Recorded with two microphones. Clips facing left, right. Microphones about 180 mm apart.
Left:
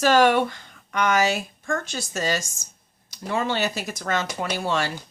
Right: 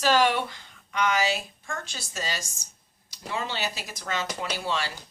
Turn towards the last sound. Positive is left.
turn(degrees=50)  # may be behind; listen again after turning